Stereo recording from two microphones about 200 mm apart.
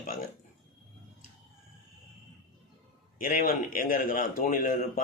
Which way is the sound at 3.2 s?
45° left (ahead or behind).